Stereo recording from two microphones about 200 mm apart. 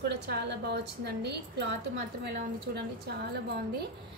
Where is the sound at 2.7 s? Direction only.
50° right (ahead or behind).